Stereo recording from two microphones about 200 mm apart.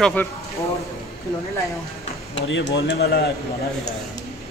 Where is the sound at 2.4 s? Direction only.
65° left (ahead or behind).